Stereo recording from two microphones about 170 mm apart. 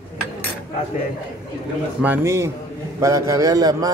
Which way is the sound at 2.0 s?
15° right (ahead or behind).